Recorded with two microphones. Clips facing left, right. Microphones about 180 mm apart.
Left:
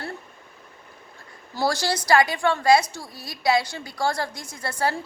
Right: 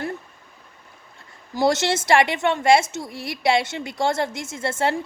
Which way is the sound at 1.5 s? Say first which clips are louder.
Right 4 dB; 20° right (ahead or behind).